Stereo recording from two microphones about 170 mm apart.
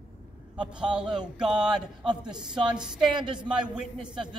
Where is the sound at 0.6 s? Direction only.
5° right (ahead or behind).